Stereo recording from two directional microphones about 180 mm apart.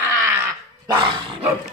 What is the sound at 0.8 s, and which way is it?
Dog, 25° right (ahead or behind).